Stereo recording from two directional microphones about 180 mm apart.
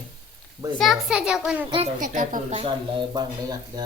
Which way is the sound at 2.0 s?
50° right (ahead or behind).